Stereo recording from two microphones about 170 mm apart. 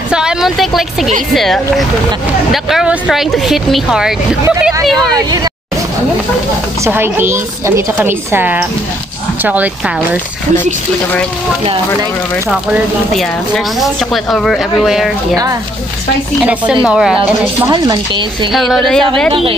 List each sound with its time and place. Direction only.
0.1 s speech: 5° right (ahead or behind)
5.1 s speech: 25° right (ahead or behind)
6.8 s a woman's voice: 15° right (ahead or behind)
12.4 s speech: centre (ahead or behind)
16.8 s speech: 5° right (ahead or behind)
17.2 s speech: 25° right (ahead or behind)
18.5 s speech: centre (ahead or behind)